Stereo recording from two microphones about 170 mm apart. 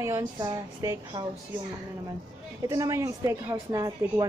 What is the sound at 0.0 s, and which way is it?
A woman's voice, 15° right (ahead or behind).